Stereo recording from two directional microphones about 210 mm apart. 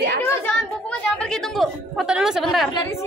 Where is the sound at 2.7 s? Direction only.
15° left (ahead or behind).